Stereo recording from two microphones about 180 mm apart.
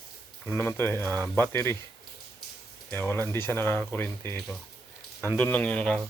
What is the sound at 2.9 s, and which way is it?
Speech, 10° left (ahead or behind).